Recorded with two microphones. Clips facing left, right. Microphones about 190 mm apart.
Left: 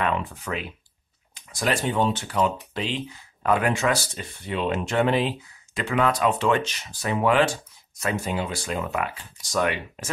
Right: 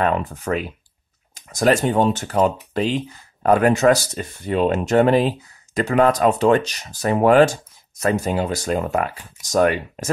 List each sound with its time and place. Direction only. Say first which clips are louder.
0.0 s speech: right 5 dB; 40° right (ahead or behind)